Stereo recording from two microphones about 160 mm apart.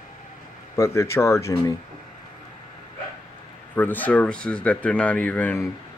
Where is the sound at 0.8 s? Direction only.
15° left (ahead or behind).